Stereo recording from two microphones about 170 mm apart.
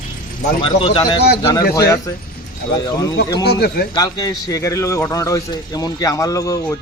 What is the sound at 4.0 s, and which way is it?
A man's voice, 20° left (ahead or behind).